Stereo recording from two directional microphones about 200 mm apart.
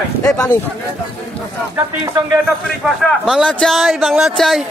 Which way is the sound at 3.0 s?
Centre (ahead or behind).